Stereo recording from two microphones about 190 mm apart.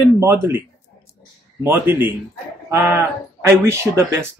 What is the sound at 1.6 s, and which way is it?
Speech, 10° right (ahead or behind).